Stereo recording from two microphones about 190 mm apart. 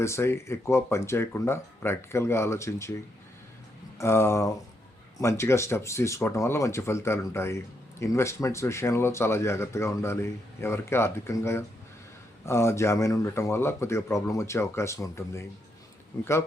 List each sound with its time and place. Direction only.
0.0 s speech: 15° left (ahead or behind)